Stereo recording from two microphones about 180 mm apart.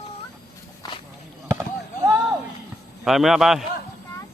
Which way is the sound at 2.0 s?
20° right (ahead or behind).